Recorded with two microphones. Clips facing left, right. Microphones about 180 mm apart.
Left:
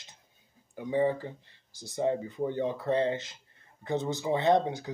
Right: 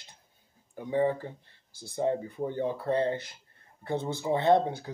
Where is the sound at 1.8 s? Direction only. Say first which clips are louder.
Even; 15° left (ahead or behind).